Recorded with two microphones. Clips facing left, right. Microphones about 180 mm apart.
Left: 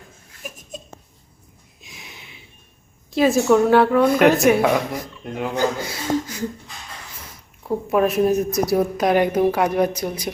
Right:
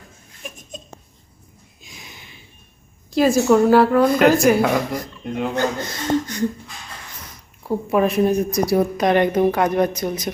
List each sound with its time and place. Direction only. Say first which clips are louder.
0.4 s laughter: even; 5° left (ahead or behind)
1.8 s sniff: even; centre (ahead or behind)
3.1 s a woman's voice: right 1 dB; centre (ahead or behind)
7.6 s a woman's voice: even; centre (ahead or behind)